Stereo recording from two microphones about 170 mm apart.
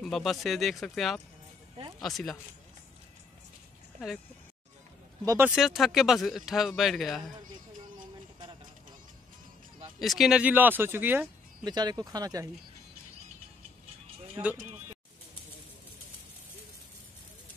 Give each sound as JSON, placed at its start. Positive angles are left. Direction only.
{"t": 0.0, "sound": "speech", "side_deg": 0}
{"t": 5.2, "sound": "speech", "side_deg": -20}
{"t": 5.5, "sound": "speech", "side_deg": 0}
{"t": 9.9, "sound": "speech", "side_deg": 0}
{"t": 11.6, "sound": "speech", "side_deg": -25}
{"t": 14.4, "sound": "speech", "side_deg": -20}